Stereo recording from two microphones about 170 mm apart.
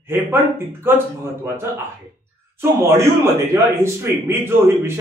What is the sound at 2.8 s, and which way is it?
A man's voice, 15° right (ahead or behind).